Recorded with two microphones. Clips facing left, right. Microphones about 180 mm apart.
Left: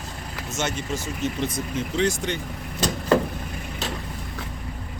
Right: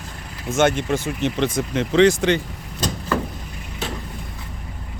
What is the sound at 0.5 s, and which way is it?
Speech, 55° right (ahead or behind).